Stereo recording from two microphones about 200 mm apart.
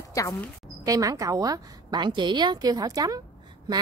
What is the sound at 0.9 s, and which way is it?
A woman's voice, 15° right (ahead or behind).